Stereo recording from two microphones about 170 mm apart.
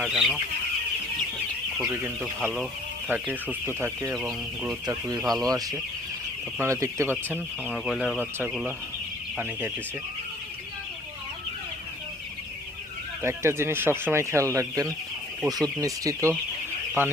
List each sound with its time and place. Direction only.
0.0 s speech: centre (ahead or behind)
1.8 s speech: 10° right (ahead or behind)
4.1 s speech: 5° right (ahead or behind)
4.9 s speech: 25° right (ahead or behind)
5.2 s speech: centre (ahead or behind)
5.5 s speech: 20° right (ahead or behind)
7.7 s speech: centre (ahead or behind)
13.2 s speech: 15° right (ahead or behind)